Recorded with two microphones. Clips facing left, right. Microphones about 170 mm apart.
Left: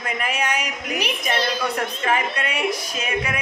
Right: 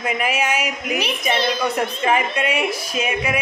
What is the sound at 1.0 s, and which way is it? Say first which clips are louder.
Speech: right 2 dB; 10° left (ahead or behind).